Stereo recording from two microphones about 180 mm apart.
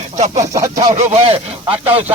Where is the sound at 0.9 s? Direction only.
35° right (ahead or behind).